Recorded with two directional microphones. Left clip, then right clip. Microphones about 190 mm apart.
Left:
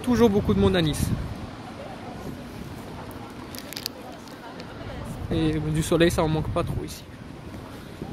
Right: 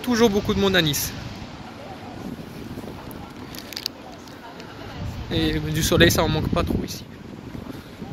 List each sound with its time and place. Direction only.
0.0 s speech: 5° left (ahead or behind)
5.3 s speech: 5° right (ahead or behind)